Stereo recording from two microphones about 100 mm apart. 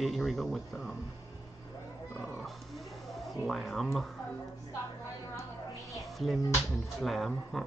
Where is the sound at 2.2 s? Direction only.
Centre (ahead or behind).